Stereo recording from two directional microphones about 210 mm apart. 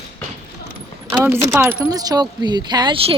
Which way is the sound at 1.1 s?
10° right (ahead or behind).